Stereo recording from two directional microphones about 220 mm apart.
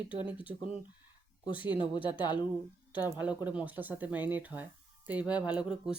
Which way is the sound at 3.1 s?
5° right (ahead or behind).